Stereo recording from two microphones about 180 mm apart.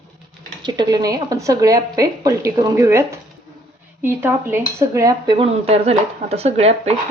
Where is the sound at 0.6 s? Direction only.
25° right (ahead or behind).